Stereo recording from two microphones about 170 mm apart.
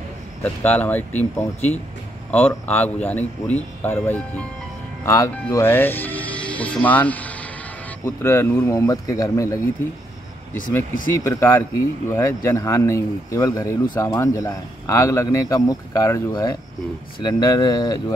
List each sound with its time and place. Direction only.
0.4 s a man's voice: 10° left (ahead or behind)
11.1 s a man's voice: 15° left (ahead or behind)